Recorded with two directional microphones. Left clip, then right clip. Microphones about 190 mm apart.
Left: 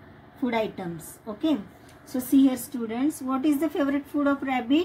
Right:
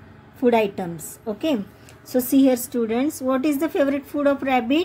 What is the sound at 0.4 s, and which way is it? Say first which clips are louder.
Speech: right 8 dB; 45° right (ahead or behind).